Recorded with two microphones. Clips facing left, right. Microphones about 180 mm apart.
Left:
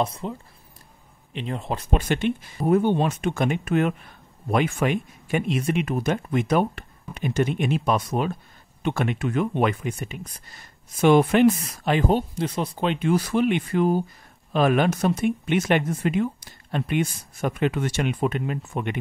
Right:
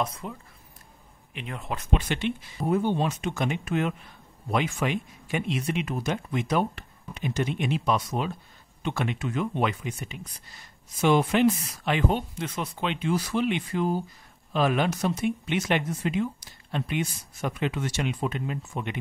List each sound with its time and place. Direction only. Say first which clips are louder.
0.0 s speech: left 4 dB; 30° left (ahead or behind); by 18.9 s 60° left (ahead or behind)